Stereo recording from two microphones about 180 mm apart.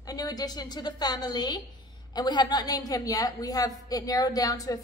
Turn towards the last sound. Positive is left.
turn(degrees=20)  # may be behind; listen again after turning